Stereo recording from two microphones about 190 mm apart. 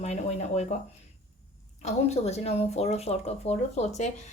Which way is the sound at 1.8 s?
35° left (ahead or behind).